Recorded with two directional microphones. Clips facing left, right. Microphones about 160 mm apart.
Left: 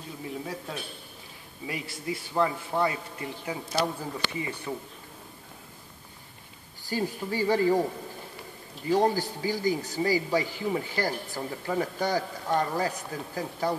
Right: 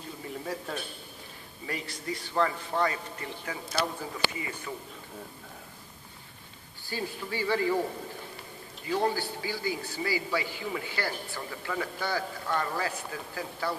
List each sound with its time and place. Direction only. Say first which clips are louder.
0.2 s a man's voice: even; 5° left (ahead or behind)
4.4 s a man's voice: left 4 dB; 30° left (ahead or behind)
6.9 s a man's voice: left 5 dB; 40° left (ahead or behind)
8.9 s a man's voice: left 4 dB; 40° left (ahead or behind)